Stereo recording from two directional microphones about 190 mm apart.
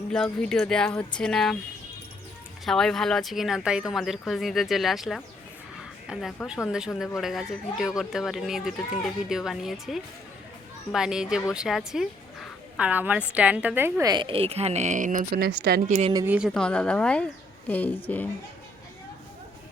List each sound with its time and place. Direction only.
0.1 s speech: 5° left (ahead or behind)
2.6 s speech: centre (ahead or behind); by 15.8 s 50° right (ahead or behind)
15.9 s speech: 35° right (ahead or behind)
16.1 s speech: 10° right (ahead or behind)
16.6 s a woman's voice: 5° left (ahead or behind)